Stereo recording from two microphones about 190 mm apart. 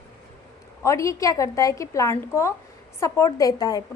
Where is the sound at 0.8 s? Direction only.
15° left (ahead or behind).